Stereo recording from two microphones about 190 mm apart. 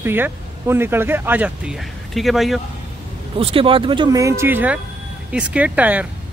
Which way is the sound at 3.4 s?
30° right (ahead or behind).